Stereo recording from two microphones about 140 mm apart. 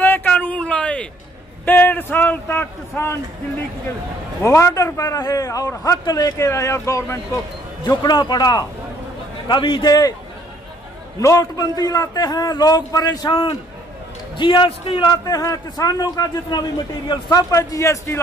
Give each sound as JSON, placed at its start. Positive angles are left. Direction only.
{"t": 0.0, "sound": "a sound", "side_deg": 10}
{"t": 1.7, "sound": "a man's voice", "side_deg": 10}
{"t": 4.4, "sound": "a man's voice", "side_deg": 20}
{"t": 11.1, "sound": "a man's voice", "side_deg": 25}